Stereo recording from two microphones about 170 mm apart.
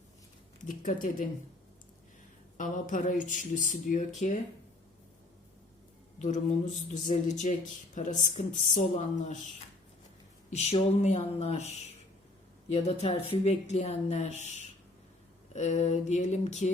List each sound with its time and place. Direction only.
0.6 s speech: 50° left (ahead or behind)
2.6 s speech: 50° left (ahead or behind)
6.1 s speech: 45° left (ahead or behind)
10.5 s speech: 40° left (ahead or behind)
12.7 s speech: 40° left (ahead or behind)